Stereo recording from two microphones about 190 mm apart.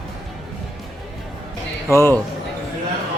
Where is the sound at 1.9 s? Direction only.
15° left (ahead or behind).